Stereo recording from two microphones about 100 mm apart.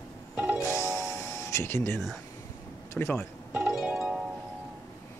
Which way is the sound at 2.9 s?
20° left (ahead or behind).